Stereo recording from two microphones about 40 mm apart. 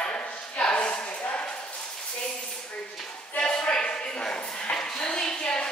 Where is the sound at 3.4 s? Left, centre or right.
Left.